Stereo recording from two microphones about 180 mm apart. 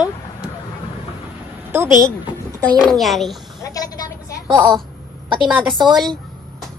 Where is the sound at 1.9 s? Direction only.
25° left (ahead or behind).